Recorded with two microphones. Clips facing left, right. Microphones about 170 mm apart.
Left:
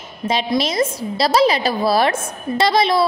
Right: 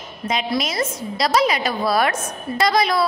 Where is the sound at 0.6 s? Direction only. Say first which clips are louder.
Left 4 dB; 30° left (ahead or behind).